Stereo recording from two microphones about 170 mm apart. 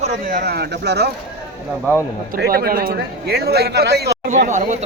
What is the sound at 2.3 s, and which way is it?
Speech, 65° right (ahead or behind).